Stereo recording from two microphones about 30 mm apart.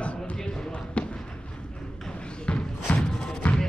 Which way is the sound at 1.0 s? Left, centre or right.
Left.